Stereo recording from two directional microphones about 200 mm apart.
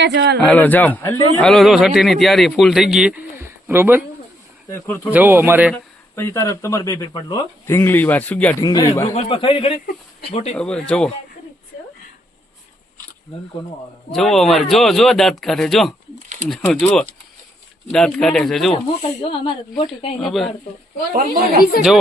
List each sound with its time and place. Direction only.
0.0 s speech: 60° right (ahead or behind)
0.4 s a man's voice: 5° left (ahead or behind)
3.4 s a sound: 10° right (ahead or behind)
5.1 s speech: 10° right (ahead or behind)
5.7 s speech: 10° left (ahead or behind)
8.6 s speech: 20° left (ahead or behind)
9.1 s speech: 25° left (ahead or behind)
10.5 s a man's voice: 5° left (ahead or behind)
14.1 s a man's voice: centre (ahead or behind)
19.2 s speech: 25° left (ahead or behind)
20.2 s a man's voice: centre (ahead or behind)
21.2 s speech: 45° right (ahead or behind)